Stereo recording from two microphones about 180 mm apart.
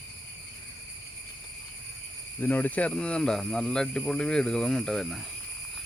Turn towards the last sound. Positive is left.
turn(degrees=0)  # may be behind; listen again after turning